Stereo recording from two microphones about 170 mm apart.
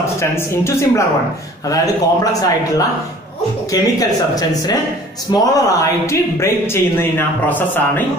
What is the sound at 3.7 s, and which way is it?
Speech, 20° left (ahead or behind).